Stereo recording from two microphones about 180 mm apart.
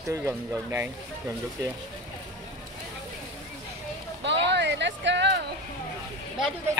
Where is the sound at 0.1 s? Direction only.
15° right (ahead or behind).